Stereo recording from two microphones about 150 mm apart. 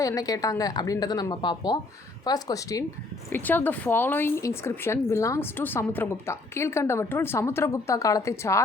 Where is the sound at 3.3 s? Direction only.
10° left (ahead or behind).